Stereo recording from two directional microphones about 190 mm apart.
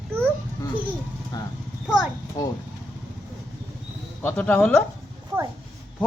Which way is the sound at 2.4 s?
20° left (ahead or behind).